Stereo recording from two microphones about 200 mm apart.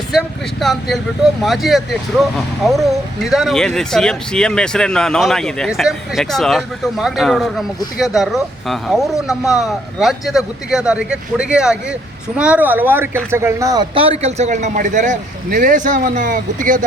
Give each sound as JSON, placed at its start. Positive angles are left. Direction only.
{"t": 0.1, "sound": "speech", "side_deg": 0}